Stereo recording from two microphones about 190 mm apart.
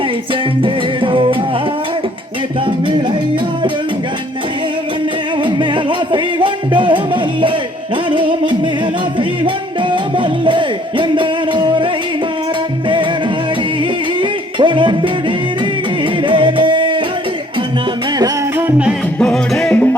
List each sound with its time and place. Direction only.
0.6 s music: 25° right (ahead or behind)
5.4 s music: 25° right (ahead or behind)
9.9 s music: 25° right (ahead or behind)
14.2 s music: 25° right (ahead or behind)
16.2 s music: 25° right (ahead or behind)
18.2 s music: 10° right (ahead or behind); by 20.0 s 5° left (ahead or behind)